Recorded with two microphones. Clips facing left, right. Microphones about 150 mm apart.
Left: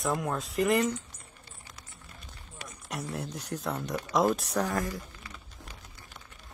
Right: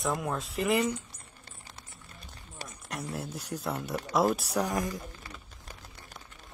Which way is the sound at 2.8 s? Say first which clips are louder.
Left 1 dB; centre (ahead or behind).